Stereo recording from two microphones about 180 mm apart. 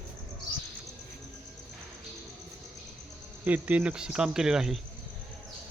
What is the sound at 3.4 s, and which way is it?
Speech, 10° right (ahead or behind).